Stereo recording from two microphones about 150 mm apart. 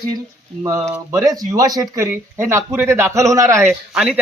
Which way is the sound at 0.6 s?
25° right (ahead or behind).